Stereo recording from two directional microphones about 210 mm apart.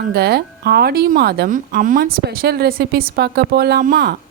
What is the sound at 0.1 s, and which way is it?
Speech, 50° right (ahead or behind).